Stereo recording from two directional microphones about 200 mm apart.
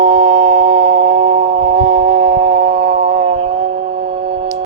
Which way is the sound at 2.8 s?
55° right (ahead or behind).